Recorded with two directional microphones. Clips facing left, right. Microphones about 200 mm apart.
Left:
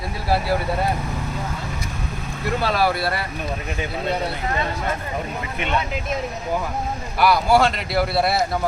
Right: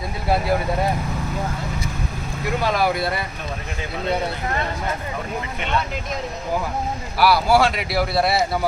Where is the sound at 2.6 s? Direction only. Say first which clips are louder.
Even; 15° right (ahead or behind).